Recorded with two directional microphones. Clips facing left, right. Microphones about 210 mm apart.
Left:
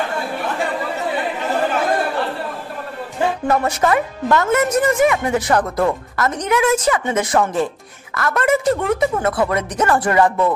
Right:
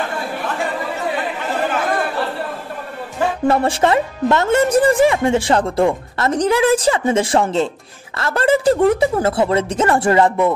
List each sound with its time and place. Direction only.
3.4 s speech: 30° right (ahead or behind)